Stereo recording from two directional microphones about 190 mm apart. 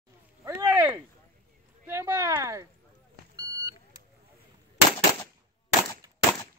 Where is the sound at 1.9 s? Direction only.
15° right (ahead or behind).